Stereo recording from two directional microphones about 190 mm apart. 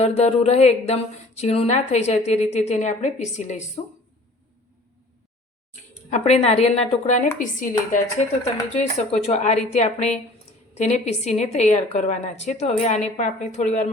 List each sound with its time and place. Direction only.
0.0 s a woman's voice: 35° left (ahead or behind)
6.1 s a woman's voice: 35° left (ahead or behind)